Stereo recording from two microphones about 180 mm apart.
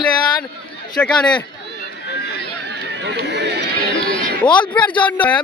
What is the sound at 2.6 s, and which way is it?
Run, 70° right (ahead or behind).